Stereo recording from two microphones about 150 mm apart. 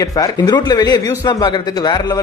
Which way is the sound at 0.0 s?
25° left (ahead or behind).